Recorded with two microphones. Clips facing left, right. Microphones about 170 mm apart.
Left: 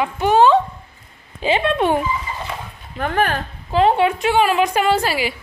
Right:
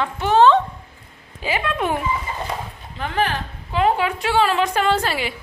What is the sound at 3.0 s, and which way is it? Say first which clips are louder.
Speech: left 3 dB; 50° left (ahead or behind).